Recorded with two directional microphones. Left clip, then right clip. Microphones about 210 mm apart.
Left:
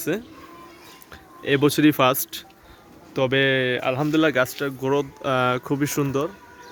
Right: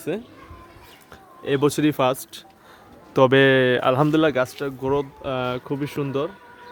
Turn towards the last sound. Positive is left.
turn(degrees=5)  # may be behind; listen again after turning